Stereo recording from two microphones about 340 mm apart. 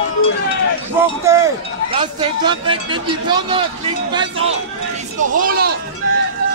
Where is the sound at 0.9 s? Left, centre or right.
Centre.